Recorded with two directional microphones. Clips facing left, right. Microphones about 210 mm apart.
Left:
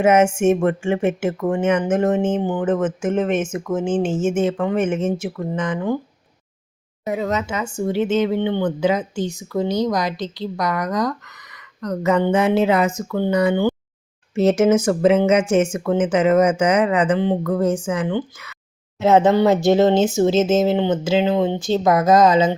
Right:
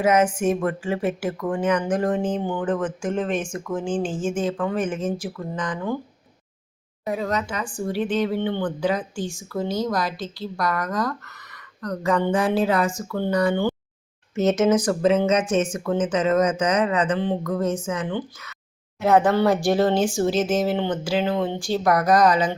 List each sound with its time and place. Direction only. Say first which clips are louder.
0.0 s speech: left 4 dB; 25° left (ahead or behind)
7.0 s speech: left 3 dB; 20° left (ahead or behind)
14.3 s speech: left 4 dB; 30° left (ahead or behind)
16.2 s speech: left 5 dB; 10° left (ahead or behind)
16.5 s speech: left 4 dB; 30° left (ahead or behind)